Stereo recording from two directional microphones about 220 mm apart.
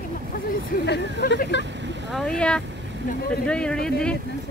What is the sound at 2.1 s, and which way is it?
Speech, 5° left (ahead or behind).